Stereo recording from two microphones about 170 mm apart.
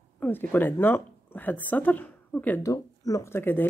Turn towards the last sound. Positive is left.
turn(degrees=10)  # may be behind; listen again after turning